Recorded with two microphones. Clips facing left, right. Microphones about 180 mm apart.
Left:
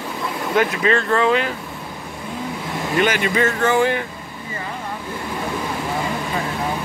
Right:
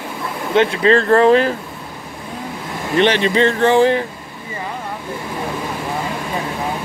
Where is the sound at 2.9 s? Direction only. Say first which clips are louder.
Right 5 dB; 30° right (ahead or behind).